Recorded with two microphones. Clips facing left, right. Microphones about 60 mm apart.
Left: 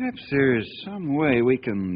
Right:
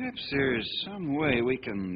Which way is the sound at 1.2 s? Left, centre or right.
Left.